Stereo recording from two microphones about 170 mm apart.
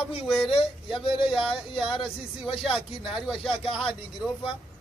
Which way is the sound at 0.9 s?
30° left (ahead or behind).